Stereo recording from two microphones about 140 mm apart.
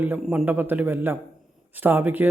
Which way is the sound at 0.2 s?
5° right (ahead or behind).